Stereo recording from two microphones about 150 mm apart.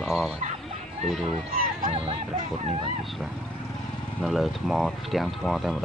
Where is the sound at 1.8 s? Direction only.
40° right (ahead or behind).